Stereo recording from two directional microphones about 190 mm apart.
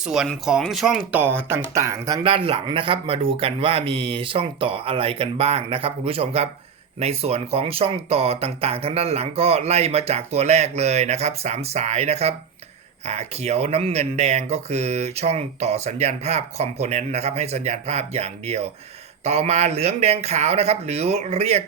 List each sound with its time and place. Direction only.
0.0 s speech: centre (ahead or behind); by 2.2 s 15° right (ahead or behind)
2.2 s speech: 30° right (ahead or behind)